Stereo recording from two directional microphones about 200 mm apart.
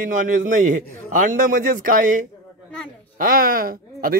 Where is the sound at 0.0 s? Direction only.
40° right (ahead or behind).